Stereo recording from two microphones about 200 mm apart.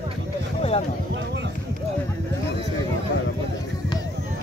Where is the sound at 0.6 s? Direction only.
30° left (ahead or behind).